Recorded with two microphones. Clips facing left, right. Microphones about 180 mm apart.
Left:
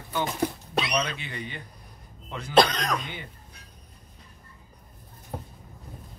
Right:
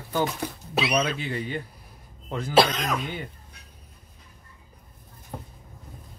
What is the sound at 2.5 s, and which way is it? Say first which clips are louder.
Speech: even; 5° right (ahead or behind).